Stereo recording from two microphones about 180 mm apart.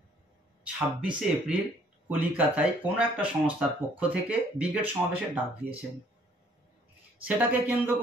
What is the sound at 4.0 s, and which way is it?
Speech, 10° right (ahead or behind).